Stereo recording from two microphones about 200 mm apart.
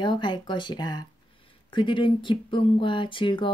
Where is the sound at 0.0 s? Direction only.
25° left (ahead or behind).